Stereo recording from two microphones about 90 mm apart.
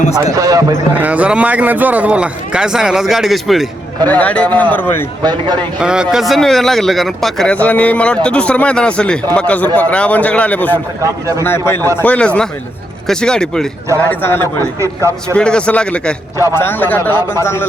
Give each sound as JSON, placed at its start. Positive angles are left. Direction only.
{"t": 0.3, "sound": "a man's voice", "side_deg": -40}
{"t": 0.9, "sound": "a man's voice", "side_deg": -15}
{"t": 4.0, "sound": "a man's voice", "side_deg": 15}
{"t": 5.2, "sound": "speech", "side_deg": -55}
{"t": 5.8, "sound": "a man's voice", "side_deg": -10}
{"t": 7.5, "sound": "a man's voice", "side_deg": 15}
{"t": 11.0, "sound": "a man's voice", "side_deg": -35}
{"t": 11.4, "sound": "a man's voice", "side_deg": 25}
{"t": 12.0, "sound": "a man's voice", "side_deg": 15}
{"t": 14.1, "sound": "a man's voice", "side_deg": 25}
{"t": 14.8, "sound": "a man's voice", "side_deg": -35}
{"t": 15.4, "sound": "a man's voice", "side_deg": 10}
{"t": 16.6, "sound": "a man's voice", "side_deg": 20}